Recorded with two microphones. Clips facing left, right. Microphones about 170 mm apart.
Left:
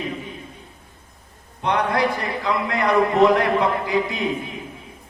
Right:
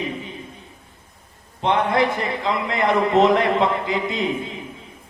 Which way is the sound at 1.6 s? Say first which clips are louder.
Right 2 dB; 20° right (ahead or behind).